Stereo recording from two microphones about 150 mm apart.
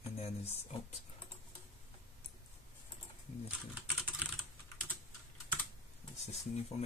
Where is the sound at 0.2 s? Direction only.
45° left (ahead or behind).